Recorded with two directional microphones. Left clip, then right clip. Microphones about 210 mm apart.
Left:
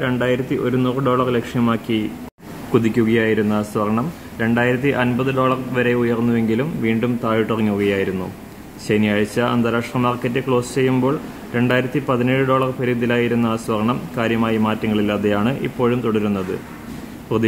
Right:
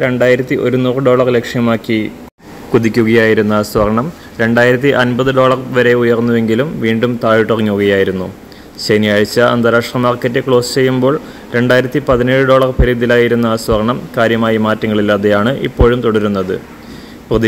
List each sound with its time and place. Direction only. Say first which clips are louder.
0.0 s speech: right 9 dB; 25° right (ahead or behind)